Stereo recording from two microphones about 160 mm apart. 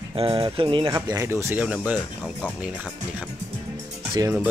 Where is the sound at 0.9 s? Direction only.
20° right (ahead or behind).